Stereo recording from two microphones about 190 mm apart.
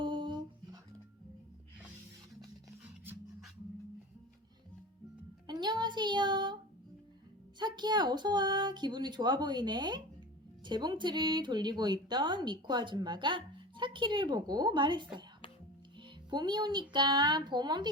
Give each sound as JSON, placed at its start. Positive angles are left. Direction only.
{"t": 0.0, "sound": "music", "side_deg": -25}
{"t": 5.5, "sound": "music", "side_deg": -20}
{"t": 7.6, "sound": "speech", "side_deg": -20}